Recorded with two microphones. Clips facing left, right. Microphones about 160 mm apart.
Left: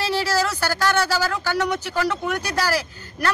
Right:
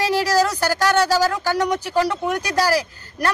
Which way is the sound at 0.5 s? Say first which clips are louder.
Right 3 dB; 15° right (ahead or behind).